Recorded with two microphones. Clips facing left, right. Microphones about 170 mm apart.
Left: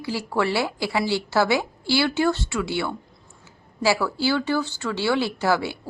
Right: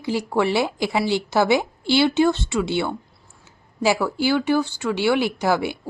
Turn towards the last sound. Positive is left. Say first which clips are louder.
# right 2 dB
turn(degrees=-15)  # may be behind; listen again after turning